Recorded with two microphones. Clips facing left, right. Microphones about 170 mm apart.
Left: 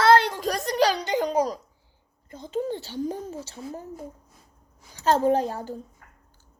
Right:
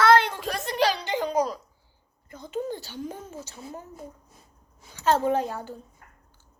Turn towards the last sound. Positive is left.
turn(degrees=40)  # may be behind; listen again after turning